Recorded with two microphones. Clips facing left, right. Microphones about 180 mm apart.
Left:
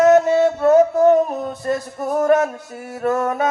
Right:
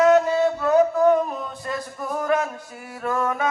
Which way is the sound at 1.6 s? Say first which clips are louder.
Left 8 dB; 45° left (ahead or behind).